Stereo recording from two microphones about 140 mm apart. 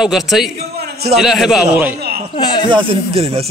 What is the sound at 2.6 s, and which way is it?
Speech, 45° right (ahead or behind).